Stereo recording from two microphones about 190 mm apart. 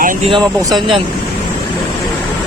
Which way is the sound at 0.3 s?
25° right (ahead or behind).